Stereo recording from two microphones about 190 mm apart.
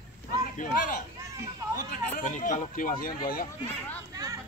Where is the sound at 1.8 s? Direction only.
45° left (ahead or behind).